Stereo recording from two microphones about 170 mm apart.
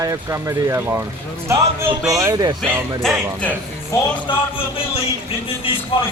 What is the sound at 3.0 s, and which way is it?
Speech, centre (ahead or behind).